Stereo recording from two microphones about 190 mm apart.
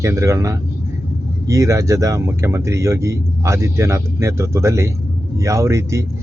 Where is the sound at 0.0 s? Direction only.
15° right (ahead or behind).